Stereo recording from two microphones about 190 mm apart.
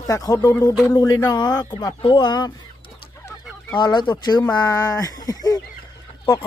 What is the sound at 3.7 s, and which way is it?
Speech, 25° left (ahead or behind).